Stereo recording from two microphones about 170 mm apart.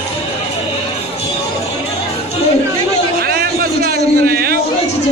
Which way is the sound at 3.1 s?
65° right (ahead or behind).